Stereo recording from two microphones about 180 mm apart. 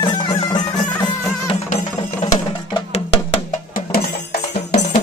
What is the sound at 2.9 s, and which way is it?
Music, 35° left (ahead or behind).